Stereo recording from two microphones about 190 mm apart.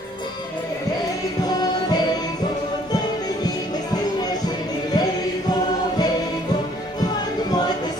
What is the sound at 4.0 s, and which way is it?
Music, 20° left (ahead or behind).